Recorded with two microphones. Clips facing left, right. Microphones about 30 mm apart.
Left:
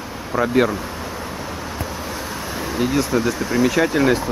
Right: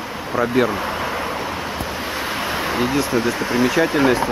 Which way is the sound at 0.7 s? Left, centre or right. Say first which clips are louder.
Right 5 dB; right.